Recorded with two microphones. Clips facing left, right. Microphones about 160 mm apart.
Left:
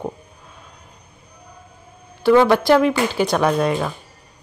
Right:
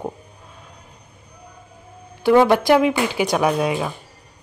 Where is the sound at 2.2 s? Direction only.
15° right (ahead or behind).